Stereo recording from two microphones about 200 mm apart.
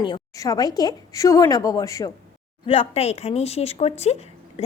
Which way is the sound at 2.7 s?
30° left (ahead or behind).